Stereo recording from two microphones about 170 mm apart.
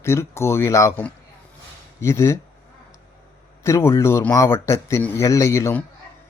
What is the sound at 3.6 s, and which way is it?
Speech, 15° left (ahead or behind).